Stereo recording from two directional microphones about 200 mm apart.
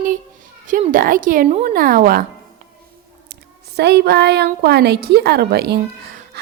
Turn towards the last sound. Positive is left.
turn(degrees=-55)  # may be behind; listen again after turning